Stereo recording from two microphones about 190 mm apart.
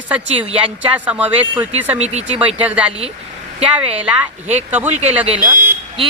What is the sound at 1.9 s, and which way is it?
Speech, 35° right (ahead or behind).